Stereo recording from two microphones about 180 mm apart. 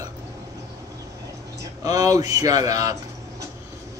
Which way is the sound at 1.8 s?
20° right (ahead or behind).